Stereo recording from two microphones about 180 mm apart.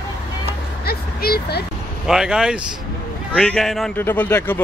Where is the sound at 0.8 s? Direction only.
60° left (ahead or behind).